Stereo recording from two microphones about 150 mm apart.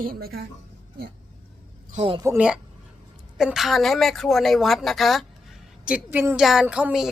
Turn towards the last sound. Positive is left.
turn(degrees=-5)  # may be behind; listen again after turning